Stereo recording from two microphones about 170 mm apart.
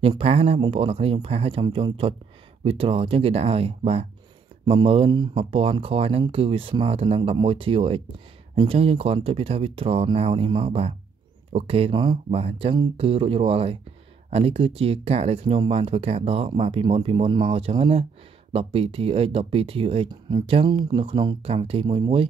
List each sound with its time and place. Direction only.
0.0 s speech: 35° right (ahead or behind)